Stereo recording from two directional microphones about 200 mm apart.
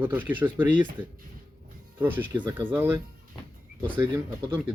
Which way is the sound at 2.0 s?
10° right (ahead or behind).